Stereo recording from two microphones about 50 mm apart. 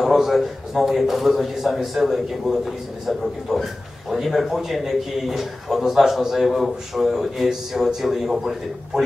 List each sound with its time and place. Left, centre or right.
0.0 s a man's voice: centre